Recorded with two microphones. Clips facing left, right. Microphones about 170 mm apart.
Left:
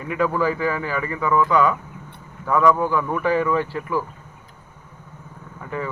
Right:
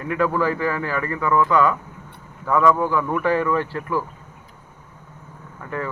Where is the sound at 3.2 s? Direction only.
10° left (ahead or behind).